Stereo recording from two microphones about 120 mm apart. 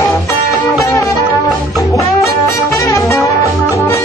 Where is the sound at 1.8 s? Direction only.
25° left (ahead or behind).